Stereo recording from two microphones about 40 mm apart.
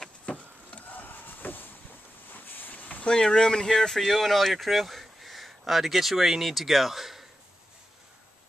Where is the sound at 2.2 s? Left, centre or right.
Left.